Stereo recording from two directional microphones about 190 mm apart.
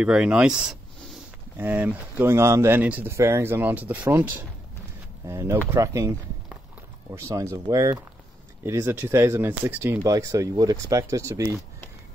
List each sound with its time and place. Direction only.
0.0 s speech: 5° right (ahead or behind)